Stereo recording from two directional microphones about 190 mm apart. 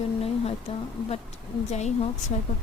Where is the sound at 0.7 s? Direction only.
35° left (ahead or behind).